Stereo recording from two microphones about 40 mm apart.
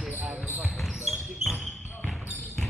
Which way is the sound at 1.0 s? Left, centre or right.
Centre.